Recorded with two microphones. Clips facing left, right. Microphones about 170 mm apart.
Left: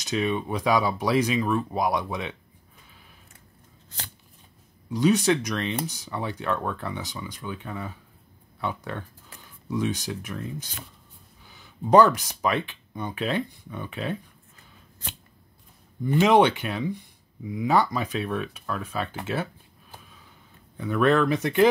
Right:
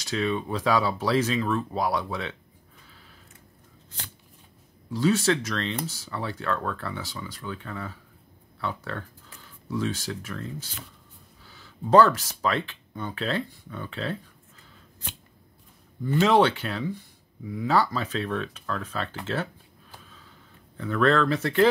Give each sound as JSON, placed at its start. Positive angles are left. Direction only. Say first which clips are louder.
{"t": 0.0, "sound": "speech", "louder": "left 1 dB", "side_deg": 20}
{"t": 4.8, "sound": "speech", "louder": "left 2 dB", "side_deg": 20}
{"t": 16.0, "sound": "speech", "louder": "left 2 dB", "side_deg": 15}
{"t": 20.7, "sound": "speech", "louder": "left 1 dB", "side_deg": 15}